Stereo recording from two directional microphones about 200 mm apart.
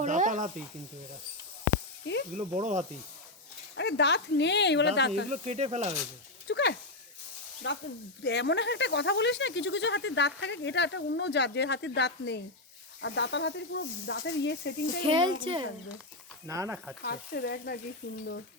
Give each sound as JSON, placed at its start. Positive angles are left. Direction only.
{"t": 0.0, "sound": "sizzle", "side_deg": -40}
{"t": 2.3, "sound": "speech", "side_deg": -35}
{"t": 3.8, "sound": "speech", "side_deg": 60}
{"t": 5.3, "sound": "speech", "side_deg": -35}
{"t": 6.5, "sound": "speech", "side_deg": 60}
{"t": 15.0, "sound": "speech", "side_deg": -25}
{"t": 16.5, "sound": "speech", "side_deg": -15}
{"t": 17.0, "sound": "speech", "side_deg": 55}